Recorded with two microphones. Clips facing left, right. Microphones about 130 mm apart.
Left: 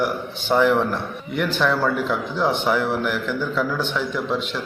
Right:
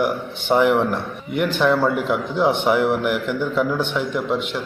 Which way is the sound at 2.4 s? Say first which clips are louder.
Right 3 dB; 15° right (ahead or behind).